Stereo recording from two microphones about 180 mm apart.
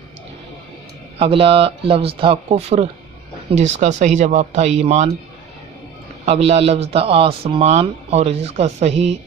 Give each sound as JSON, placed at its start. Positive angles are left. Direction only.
{"t": 1.1, "sound": "a man's voice", "side_deg": -30}
{"t": 6.2, "sound": "a man's voice", "side_deg": -35}